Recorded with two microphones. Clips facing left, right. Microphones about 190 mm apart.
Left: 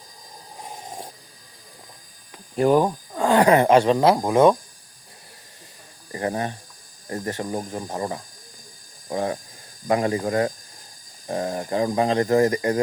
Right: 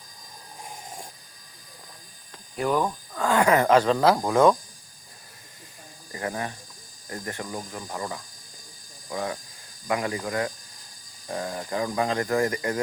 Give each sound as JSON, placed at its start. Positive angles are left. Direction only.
{"t": 2.6, "sound": "speech", "side_deg": 35}
{"t": 6.1, "sound": "speech", "side_deg": 35}